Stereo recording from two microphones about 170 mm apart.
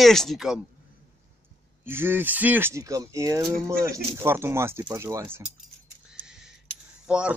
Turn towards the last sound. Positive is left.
turn(degrees=-5)  # may be behind; listen again after turning